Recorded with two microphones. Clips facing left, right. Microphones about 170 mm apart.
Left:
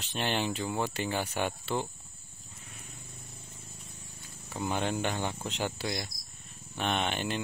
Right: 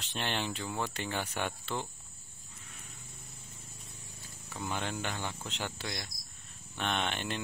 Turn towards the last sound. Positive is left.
turn(degrees=5)  # may be behind; listen again after turning